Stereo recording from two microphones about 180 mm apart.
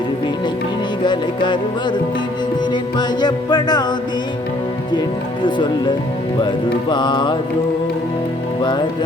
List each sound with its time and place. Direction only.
1.0 s music: 25° left (ahead or behind)
3.0 s speech: 25° left (ahead or behind)
4.9 s speech: 25° left (ahead or behind)
6.9 s speech: 25° left (ahead or behind)